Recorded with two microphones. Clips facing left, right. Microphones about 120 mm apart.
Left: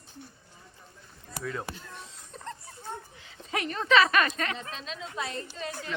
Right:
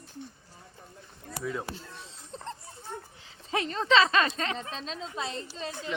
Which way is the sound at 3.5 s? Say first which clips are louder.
Even; 25° right (ahead or behind).